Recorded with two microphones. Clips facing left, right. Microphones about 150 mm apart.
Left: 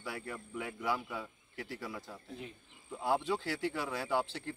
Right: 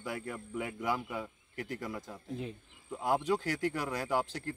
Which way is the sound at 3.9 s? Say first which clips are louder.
Even; 10° right (ahead or behind).